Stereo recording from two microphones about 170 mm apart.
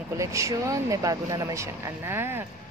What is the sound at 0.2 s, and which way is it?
Speech, 15° right (ahead or behind).